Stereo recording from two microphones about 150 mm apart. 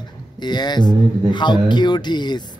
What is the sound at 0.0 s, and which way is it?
Speech, 30° left (ahead or behind).